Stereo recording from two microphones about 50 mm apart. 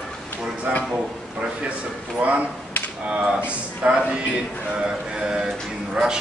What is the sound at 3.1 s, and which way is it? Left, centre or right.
Speech, centre.